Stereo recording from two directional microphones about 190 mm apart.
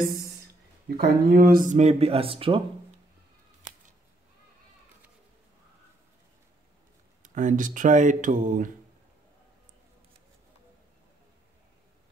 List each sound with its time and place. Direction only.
0.8 s speech: 50° right (ahead or behind); by 2.6 s 30° right (ahead or behind)
7.2 s speech: 40° right (ahead or behind)